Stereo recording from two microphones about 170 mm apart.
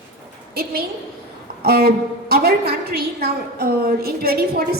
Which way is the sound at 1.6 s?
65° right (ahead or behind).